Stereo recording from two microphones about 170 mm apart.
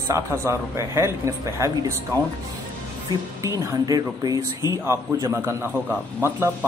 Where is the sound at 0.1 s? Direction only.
15° right (ahead or behind).